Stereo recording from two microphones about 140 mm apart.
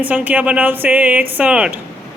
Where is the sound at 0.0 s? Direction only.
10° right (ahead or behind).